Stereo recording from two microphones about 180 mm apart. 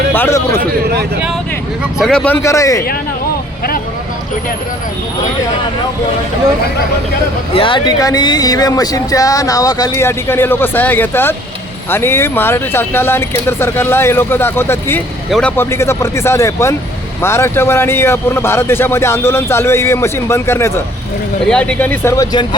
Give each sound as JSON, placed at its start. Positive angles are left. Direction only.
{"t": 0.1, "sound": "a sound", "side_deg": 10}
{"t": 2.0, "sound": "a man's voice", "side_deg": 5}
{"t": 7.5, "sound": "a man's voice", "side_deg": 30}